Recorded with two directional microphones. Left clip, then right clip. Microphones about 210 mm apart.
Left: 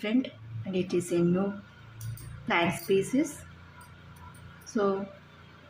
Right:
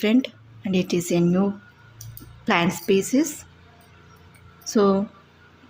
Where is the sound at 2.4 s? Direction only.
45° right (ahead or behind).